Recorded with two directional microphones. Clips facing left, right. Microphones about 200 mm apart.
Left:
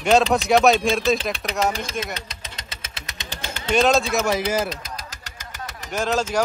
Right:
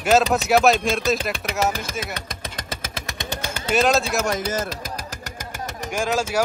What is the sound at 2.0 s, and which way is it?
Engine, 55° right (ahead or behind).